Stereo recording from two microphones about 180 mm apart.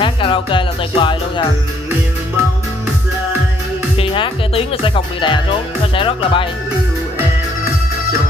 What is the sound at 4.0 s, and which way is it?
Speech, 30° left (ahead or behind).